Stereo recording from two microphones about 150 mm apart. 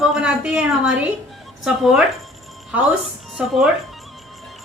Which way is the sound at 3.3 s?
Centre (ahead or behind).